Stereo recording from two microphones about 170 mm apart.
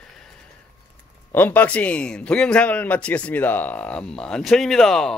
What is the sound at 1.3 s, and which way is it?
A man's voice, 10° left (ahead or behind).